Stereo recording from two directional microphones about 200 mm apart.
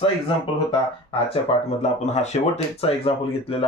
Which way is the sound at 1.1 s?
30° left (ahead or behind).